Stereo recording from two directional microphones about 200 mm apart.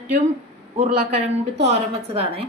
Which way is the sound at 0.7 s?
30° right (ahead or behind).